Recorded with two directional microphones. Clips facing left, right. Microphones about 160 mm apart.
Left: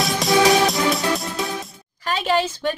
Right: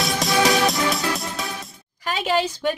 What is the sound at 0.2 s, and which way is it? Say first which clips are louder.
Music: left 3 dB; centre (ahead or behind).